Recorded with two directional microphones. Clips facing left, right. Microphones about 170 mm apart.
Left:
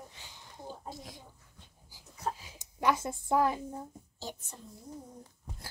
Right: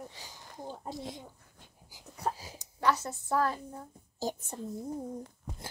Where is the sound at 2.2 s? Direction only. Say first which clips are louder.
Right 2 dB; 40° right (ahead or behind).